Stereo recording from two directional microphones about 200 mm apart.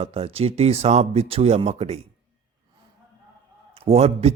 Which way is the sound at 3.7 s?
30° right (ahead or behind).